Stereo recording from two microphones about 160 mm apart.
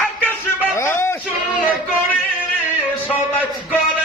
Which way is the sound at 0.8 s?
15° left (ahead or behind).